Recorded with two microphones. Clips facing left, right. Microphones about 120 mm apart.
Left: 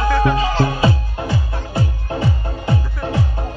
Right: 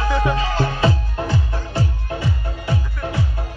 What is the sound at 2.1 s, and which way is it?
Music, 30° left (ahead or behind).